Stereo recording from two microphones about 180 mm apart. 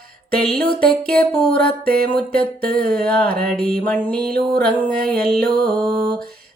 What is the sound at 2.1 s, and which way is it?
Speech, 55° right (ahead or behind).